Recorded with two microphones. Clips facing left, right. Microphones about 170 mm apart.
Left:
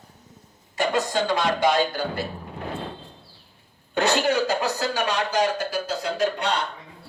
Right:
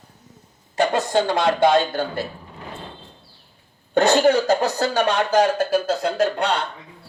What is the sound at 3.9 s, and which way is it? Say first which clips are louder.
Speech: right 6 dB; 45° right (ahead or behind).